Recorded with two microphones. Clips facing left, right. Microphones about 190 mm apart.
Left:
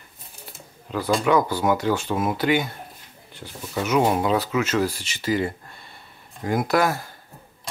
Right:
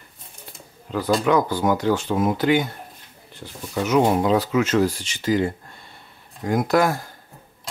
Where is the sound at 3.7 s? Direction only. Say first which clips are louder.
Right 2 dB; 5° left (ahead or behind).